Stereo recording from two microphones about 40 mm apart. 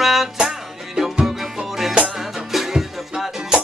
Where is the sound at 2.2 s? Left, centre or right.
Centre.